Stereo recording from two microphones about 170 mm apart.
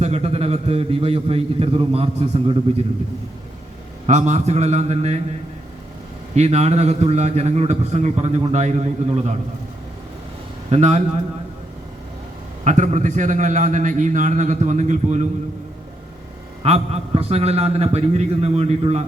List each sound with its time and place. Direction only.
0.0 s a man's voice: 35° right (ahead or behind)
4.0 s a man's voice: 45° right (ahead or behind)
6.3 s a man's voice: 40° right (ahead or behind)
10.7 s a man's voice: 40° right (ahead or behind)
12.6 s a man's voice: 45° right (ahead or behind)
16.6 s a man's voice: 35° right (ahead or behind)